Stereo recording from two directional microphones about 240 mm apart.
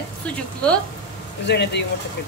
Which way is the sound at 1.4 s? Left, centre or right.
Left.